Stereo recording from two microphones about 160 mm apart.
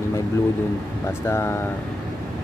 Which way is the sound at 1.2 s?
15° left (ahead or behind).